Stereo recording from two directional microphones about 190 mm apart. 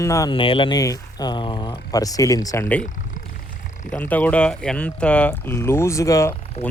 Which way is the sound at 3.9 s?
10° left (ahead or behind).